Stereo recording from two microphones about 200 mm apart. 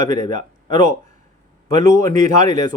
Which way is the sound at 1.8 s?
15° left (ahead or behind).